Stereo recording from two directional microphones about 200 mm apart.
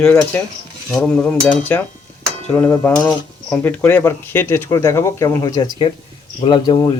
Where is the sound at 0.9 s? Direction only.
5° left (ahead or behind).